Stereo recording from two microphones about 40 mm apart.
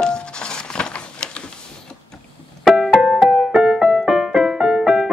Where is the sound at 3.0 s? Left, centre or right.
Centre.